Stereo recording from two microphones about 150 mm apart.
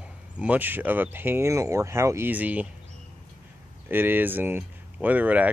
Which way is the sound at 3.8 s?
15° right (ahead or behind).